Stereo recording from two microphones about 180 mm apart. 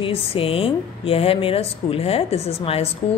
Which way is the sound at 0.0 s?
30° left (ahead or behind).